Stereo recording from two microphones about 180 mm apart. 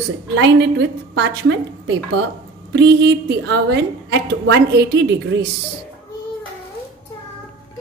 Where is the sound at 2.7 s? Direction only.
65° right (ahead or behind).